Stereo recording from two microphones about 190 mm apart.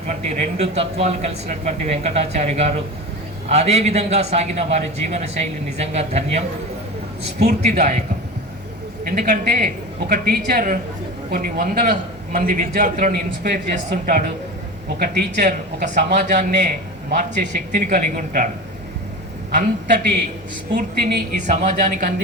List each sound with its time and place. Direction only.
0.3 s a man's voice: 35° right (ahead or behind)
7.4 s a man's voice: 40° right (ahead or behind)
9.0 s a man's voice: 40° right (ahead or behind)
14.9 s a woman's voice: 60° right (ahead or behind)
15.4 s a man's voice: 40° right (ahead or behind)
21.4 s a man's voice: 40° right (ahead or behind)